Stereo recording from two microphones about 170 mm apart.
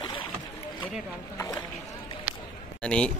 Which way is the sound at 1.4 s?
20° left (ahead or behind).